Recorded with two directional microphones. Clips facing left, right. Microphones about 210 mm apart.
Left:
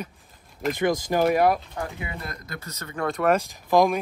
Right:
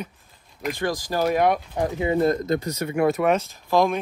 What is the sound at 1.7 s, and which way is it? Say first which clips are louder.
Speech: right 10 dB; 20° right (ahead or behind).